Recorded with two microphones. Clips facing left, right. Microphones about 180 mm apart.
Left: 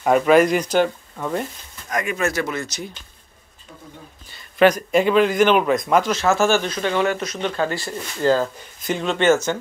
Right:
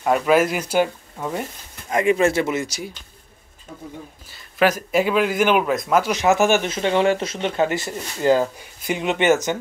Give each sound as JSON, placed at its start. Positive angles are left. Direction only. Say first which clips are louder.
{"t": 0.0, "sound": "a man's voice", "louder": "left 3 dB", "side_deg": -5}
{"t": 1.9, "sound": "speech", "louder": "right 6 dB", "side_deg": -25}
{"t": 4.3, "sound": "a man's voice", "louder": "left 4 dB", "side_deg": -5}
{"t": 6.1, "sound": "speech", "louder": "right 1 dB", "side_deg": -15}